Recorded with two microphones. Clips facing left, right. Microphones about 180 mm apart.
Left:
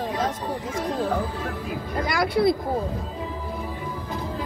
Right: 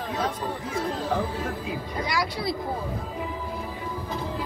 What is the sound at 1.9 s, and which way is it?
Speech, 50° left (ahead or behind).